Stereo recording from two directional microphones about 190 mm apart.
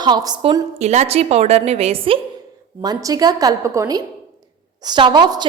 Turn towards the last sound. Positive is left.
turn(degrees=-25)  # may be behind; listen again after turning